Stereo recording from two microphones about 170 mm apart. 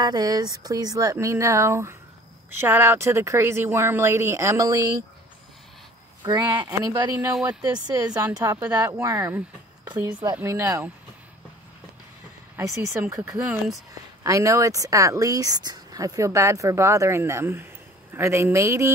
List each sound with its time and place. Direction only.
0.0 s speech: 25° right (ahead or behind)
6.3 s speech: 20° right (ahead or behind)
12.5 s speech: 15° right (ahead or behind)